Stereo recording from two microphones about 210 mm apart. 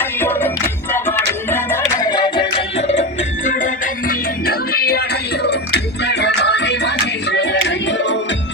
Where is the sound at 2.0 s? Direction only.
20° left (ahead or behind).